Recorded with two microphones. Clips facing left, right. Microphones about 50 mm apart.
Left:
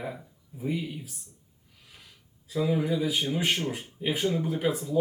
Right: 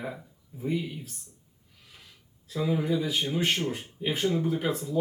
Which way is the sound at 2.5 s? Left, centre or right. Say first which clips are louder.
Left 1 dB; centre.